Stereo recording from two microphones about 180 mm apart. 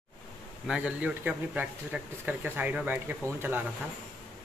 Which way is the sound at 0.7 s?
5° right (ahead or behind).